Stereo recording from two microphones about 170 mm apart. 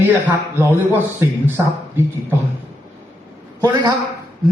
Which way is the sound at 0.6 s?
15° right (ahead or behind).